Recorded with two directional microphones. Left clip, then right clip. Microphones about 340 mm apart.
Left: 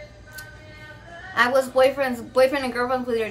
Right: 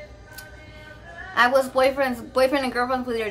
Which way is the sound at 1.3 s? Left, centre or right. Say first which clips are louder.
Right 1 dB; centre.